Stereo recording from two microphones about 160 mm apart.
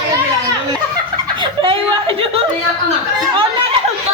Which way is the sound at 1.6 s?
35° right (ahead or behind).